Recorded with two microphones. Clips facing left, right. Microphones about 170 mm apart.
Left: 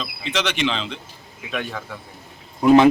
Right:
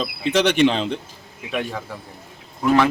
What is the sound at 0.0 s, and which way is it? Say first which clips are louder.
Speech: right 6 dB; 50° right (ahead or behind).